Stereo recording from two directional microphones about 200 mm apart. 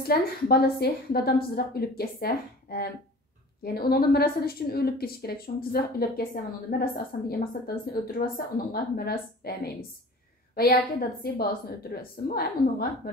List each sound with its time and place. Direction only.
0.0 s a woman's voice: 50° left (ahead or behind)